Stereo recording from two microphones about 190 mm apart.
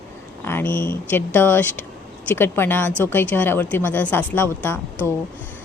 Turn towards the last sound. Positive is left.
turn(degrees=10)  # may be behind; listen again after turning